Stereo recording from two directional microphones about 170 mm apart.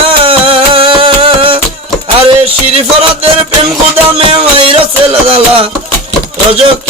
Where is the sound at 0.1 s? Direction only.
35° right (ahead or behind).